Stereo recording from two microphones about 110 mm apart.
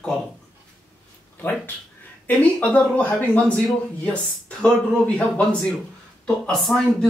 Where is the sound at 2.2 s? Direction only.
10° left (ahead or behind).